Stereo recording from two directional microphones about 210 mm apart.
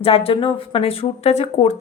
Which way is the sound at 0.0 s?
25° left (ahead or behind).